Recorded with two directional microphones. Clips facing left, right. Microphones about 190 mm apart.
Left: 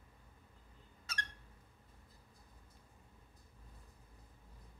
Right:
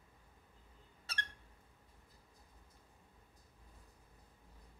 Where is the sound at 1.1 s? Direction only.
30° right (ahead or behind).